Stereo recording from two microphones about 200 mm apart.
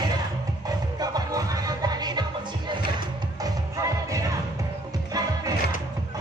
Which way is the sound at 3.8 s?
15° right (ahead or behind).